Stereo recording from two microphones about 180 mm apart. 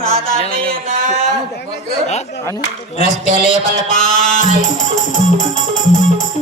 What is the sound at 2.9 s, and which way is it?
Music, 40° left (ahead or behind).